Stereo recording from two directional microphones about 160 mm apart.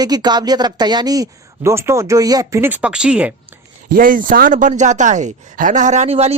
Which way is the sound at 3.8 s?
60° right (ahead or behind).